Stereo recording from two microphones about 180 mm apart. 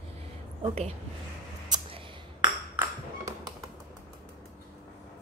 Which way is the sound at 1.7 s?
30° right (ahead or behind).